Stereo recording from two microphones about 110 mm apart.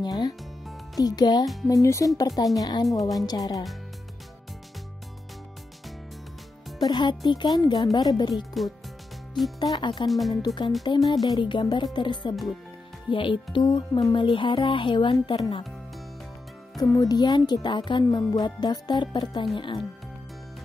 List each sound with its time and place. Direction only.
0.0 s speech: 40° left (ahead or behind)
2.9 s speech: centre (ahead or behind)
3.3 s speech: 35° left (ahead or behind)
6.8 s speech: 45° left (ahead or behind)
8.4 s speech: centre (ahead or behind)
9.6 s speech: 45° left (ahead or behind)
10.0 s speech: centre (ahead or behind)
10.4 s speech: 45° left (ahead or behind)
16.8 s speech: 35° left (ahead or behind)